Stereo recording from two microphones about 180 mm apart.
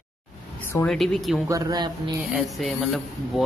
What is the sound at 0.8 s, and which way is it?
Speech, centre (ahead or behind).